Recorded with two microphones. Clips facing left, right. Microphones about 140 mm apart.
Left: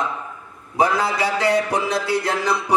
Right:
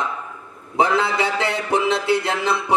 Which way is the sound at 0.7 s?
25° right (ahead or behind).